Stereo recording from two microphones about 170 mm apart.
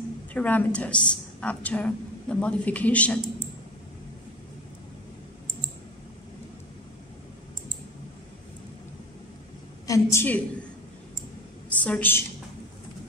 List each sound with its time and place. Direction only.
0.3 s a woman's voice: 10° left (ahead or behind)
9.8 s a woman's voice: 20° left (ahead or behind)
11.7 s a woman's voice: 10° left (ahead or behind)